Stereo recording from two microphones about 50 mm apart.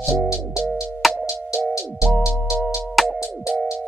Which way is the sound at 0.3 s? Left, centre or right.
Left.